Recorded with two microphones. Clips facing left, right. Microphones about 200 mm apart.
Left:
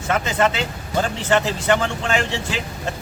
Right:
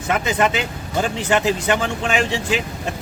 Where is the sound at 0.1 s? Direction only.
15° right (ahead or behind).